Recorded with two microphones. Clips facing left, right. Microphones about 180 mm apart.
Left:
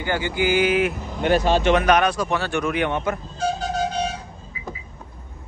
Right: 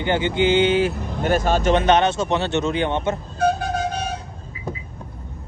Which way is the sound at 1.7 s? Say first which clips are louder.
Right 2 dB; 25° right (ahead or behind).